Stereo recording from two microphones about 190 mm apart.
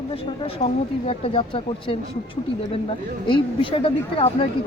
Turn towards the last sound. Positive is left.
turn(degrees=30)  # may be behind; listen again after turning